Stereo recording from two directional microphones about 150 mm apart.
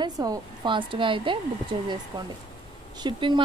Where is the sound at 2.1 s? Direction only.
25° right (ahead or behind).